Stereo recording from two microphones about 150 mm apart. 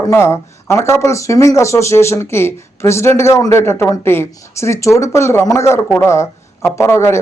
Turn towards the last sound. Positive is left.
turn(degrees=20)  # may be behind; listen again after turning